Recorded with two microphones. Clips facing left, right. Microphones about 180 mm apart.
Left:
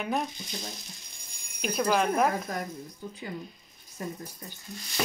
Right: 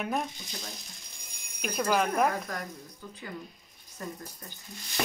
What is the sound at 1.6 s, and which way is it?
Speech, centre (ahead or behind).